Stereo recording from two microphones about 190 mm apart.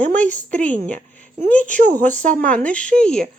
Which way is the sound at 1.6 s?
40° right (ahead or behind).